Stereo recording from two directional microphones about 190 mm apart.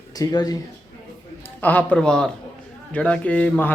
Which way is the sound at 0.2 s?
20° left (ahead or behind).